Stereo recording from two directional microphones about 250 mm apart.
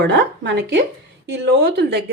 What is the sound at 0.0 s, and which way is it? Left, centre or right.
Speech, right.